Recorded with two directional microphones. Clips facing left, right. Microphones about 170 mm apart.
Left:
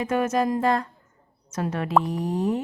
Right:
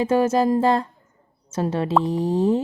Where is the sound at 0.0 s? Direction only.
30° right (ahead or behind).